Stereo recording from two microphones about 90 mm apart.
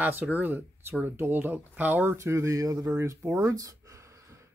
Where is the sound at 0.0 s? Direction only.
20° right (ahead or behind).